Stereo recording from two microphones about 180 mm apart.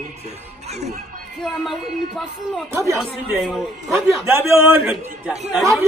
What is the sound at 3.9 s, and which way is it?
A man's voice, 15° right (ahead or behind).